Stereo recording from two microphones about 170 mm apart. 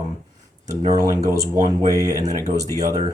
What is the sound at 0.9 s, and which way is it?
Speech, 20° right (ahead or behind).